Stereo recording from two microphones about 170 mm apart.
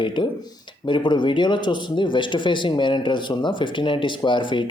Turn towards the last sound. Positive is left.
turn(degrees=30)  # may be behind; listen again after turning